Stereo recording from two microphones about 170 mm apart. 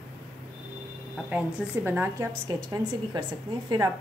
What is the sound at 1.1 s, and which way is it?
A woman's voice, 5° right (ahead or behind).